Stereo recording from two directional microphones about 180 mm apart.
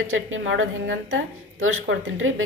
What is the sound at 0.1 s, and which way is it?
A woman's voice, 90° right.